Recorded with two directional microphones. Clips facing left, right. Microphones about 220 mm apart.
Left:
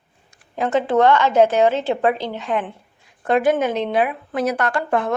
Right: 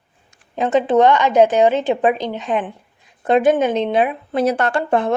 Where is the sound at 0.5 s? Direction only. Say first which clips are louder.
Right 3 dB; 20° right (ahead or behind).